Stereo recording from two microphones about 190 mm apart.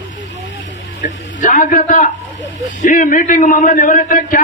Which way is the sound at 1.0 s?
45° left (ahead or behind).